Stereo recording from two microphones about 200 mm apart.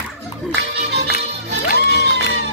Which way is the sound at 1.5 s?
55° right (ahead or behind).